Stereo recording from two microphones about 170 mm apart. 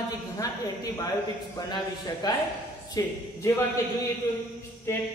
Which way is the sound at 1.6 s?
25° left (ahead or behind).